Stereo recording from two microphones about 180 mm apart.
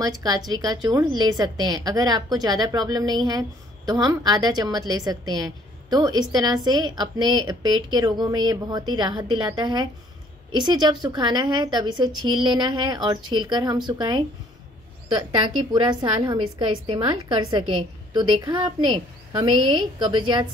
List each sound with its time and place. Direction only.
0.0 s a woman's voice: 20° right (ahead or behind)